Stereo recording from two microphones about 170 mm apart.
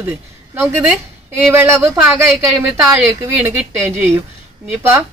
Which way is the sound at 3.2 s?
15° right (ahead or behind).